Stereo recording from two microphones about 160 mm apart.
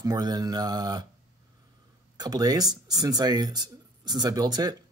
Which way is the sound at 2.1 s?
25° right (ahead or behind).